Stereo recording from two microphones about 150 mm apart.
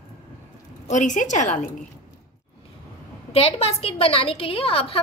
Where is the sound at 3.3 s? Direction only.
45° left (ahead or behind).